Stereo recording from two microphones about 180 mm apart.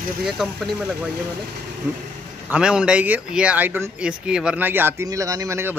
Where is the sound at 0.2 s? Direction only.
Centre (ahead or behind).